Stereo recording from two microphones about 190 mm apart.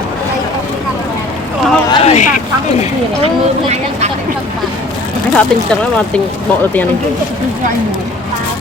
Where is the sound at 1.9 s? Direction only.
35° left (ahead or behind).